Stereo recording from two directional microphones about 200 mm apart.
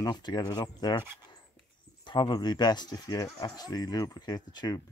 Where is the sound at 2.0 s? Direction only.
20° left (ahead or behind).